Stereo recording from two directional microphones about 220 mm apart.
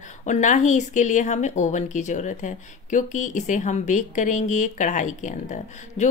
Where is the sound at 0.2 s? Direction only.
35° left (ahead or behind).